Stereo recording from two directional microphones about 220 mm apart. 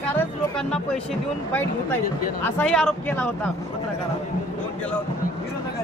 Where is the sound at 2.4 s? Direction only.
5° left (ahead or behind).